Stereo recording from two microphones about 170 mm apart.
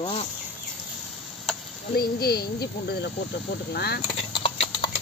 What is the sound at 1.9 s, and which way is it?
Speech, 65° left (ahead or behind).